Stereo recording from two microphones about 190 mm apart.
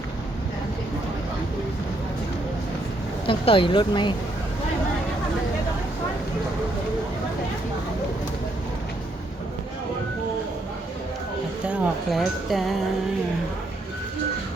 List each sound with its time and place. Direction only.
3.2 s speech: 30° left (ahead or behind)
11.7 s speech: centre (ahead or behind)